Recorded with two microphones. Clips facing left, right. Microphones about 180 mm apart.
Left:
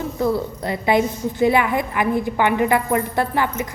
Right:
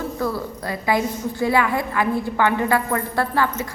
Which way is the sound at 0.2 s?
20° left (ahead or behind).